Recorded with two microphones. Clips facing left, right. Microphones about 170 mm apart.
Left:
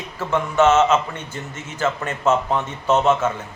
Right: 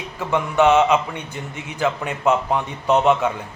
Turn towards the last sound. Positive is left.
turn(degrees=-15)  # may be behind; listen again after turning